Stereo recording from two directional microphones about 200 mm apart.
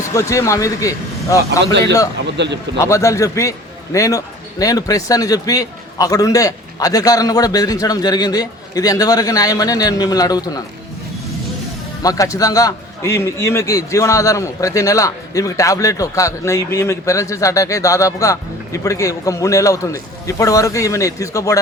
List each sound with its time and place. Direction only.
0.1 s a man's voice: 15° left (ahead or behind)
1.5 s a man's voice: 60° right (ahead or behind)
1.8 s a man's voice: 15° left (ahead or behind)
12.0 s a man's voice: 15° left (ahead or behind)